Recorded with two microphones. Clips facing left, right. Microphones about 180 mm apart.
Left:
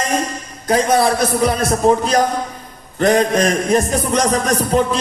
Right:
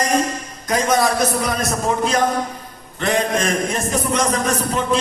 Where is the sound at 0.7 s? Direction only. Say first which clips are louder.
Left 3 dB; 30° left (ahead or behind).